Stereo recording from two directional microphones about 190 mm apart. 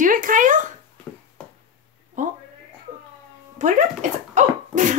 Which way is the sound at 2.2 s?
40° right (ahead or behind).